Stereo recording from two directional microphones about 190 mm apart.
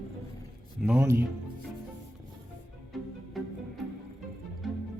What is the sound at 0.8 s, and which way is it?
Speech, 10° right (ahead or behind).